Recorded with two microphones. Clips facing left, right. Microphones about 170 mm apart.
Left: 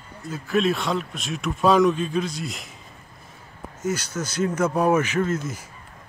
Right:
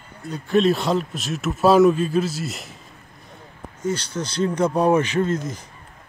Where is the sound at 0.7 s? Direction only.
Centre (ahead or behind).